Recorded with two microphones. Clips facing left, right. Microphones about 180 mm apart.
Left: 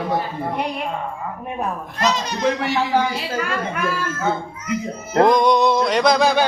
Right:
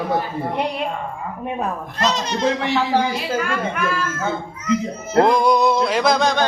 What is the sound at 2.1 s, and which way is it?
Speech, 25° right (ahead or behind).